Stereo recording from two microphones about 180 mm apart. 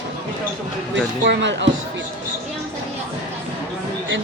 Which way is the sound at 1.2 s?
80° right.